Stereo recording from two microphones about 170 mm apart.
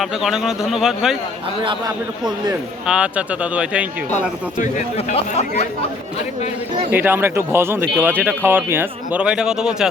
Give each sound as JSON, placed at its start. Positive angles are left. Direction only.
{"t": 0.0, "sound": "speech", "side_deg": 0}
{"t": 2.8, "sound": "speech", "side_deg": -5}
{"t": 4.6, "sound": "speech", "side_deg": 40}
{"t": 6.9, "sound": "speech", "side_deg": -10}